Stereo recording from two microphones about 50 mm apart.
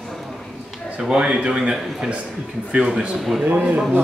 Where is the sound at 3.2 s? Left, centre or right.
Centre.